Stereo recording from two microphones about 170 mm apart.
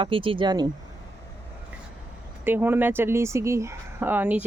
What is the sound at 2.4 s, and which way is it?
Speech, 10° right (ahead or behind).